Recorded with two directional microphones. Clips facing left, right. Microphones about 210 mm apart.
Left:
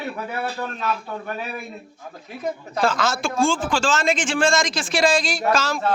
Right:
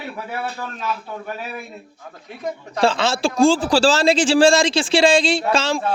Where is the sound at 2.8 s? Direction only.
30° right (ahead or behind).